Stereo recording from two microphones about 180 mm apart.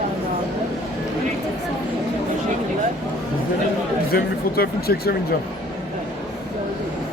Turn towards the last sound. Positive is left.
turn(degrees=60)  # may be behind; listen again after turning